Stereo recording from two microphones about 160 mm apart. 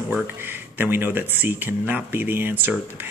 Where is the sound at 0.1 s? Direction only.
10° right (ahead or behind).